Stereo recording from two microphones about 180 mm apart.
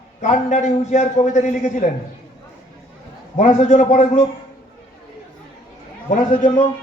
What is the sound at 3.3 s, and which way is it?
Speech, 40° left (ahead or behind).